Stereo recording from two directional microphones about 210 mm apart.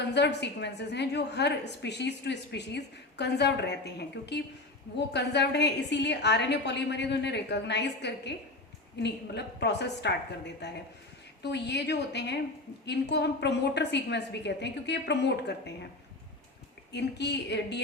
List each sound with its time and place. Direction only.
0.1 s a woman's voice: 55° left (ahead or behind)
16.9 s a woman's voice: 55° left (ahead or behind)